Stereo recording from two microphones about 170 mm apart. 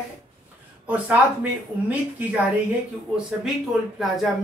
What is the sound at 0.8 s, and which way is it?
A woman's voice, 10° right (ahead or behind).